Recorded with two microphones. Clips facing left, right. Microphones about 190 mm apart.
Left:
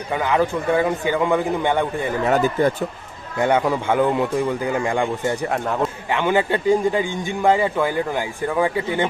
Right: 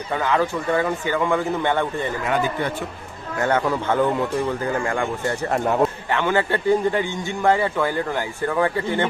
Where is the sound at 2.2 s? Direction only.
45° left (ahead or behind).